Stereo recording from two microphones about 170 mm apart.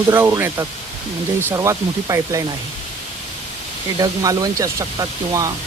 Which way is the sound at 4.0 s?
20° right (ahead or behind).